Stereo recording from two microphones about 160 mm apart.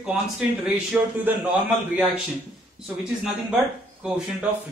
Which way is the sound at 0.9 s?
10° right (ahead or behind).